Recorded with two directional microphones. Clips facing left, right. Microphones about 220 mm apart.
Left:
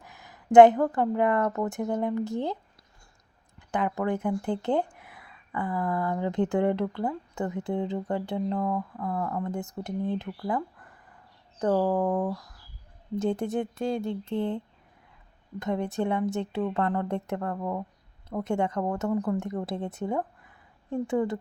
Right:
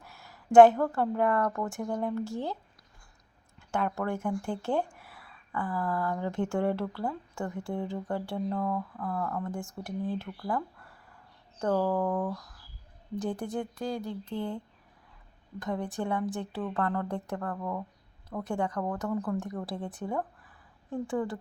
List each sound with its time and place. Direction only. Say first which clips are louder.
0.0 s a woman's voice: left 2 dB; 15° left (ahead or behind)
3.7 s a woman's voice: left 3 dB; 15° left (ahead or behind)
19.1 s a woman's voice: left 4 dB; 15° left (ahead or behind)